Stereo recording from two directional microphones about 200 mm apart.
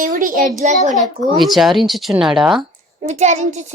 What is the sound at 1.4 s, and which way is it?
Speech, centre (ahead or behind).